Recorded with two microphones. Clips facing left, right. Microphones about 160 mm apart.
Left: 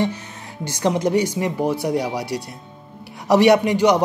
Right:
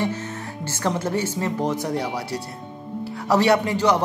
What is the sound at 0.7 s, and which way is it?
A man's voice, 15° left (ahead or behind).